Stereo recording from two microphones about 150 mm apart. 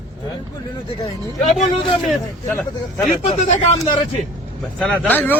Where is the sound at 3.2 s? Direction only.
45° left (ahead or behind).